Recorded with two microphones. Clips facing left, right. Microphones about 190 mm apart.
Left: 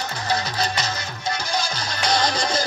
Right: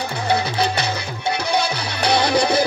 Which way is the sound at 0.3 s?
60° right (ahead or behind).